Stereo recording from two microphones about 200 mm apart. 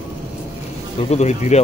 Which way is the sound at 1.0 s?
35° left (ahead or behind).